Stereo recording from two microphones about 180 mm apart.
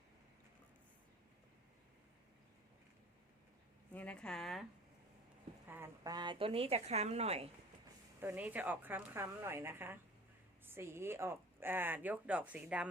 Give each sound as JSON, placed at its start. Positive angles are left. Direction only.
{"t": 3.9, "sound": "a woman's voice", "side_deg": 5}
{"t": 5.6, "sound": "speech", "side_deg": -10}
{"t": 6.0, "sound": "a woman's voice", "side_deg": -20}
{"t": 8.2, "sound": "speech", "side_deg": -10}